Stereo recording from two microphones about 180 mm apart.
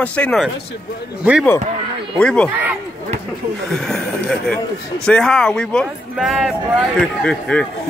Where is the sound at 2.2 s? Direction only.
5° left (ahead or behind).